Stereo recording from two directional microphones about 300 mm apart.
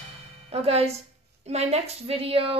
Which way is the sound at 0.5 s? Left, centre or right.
Centre.